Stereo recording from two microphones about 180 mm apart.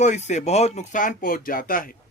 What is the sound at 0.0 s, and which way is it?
A man's voice, 40° left (ahead or behind).